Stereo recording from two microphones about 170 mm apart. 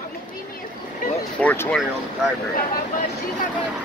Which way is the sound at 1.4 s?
10° left (ahead or behind).